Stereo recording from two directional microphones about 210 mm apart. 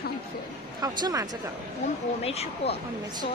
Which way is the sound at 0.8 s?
15° right (ahead or behind).